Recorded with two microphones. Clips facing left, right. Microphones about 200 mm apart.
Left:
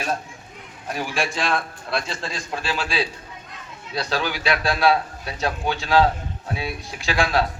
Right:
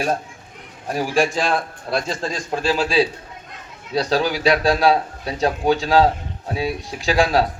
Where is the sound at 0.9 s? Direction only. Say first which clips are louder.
Right 7 dB; 35° right (ahead or behind).